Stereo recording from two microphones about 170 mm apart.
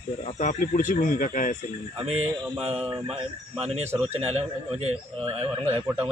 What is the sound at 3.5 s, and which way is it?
Speech, 35° right (ahead or behind).